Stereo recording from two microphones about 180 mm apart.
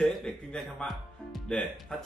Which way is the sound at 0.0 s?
Centre (ahead or behind).